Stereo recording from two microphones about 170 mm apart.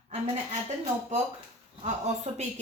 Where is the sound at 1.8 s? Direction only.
40° right (ahead or behind).